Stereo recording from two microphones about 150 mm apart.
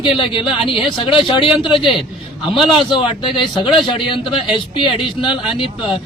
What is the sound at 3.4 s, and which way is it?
A man's voice, 35° left (ahead or behind).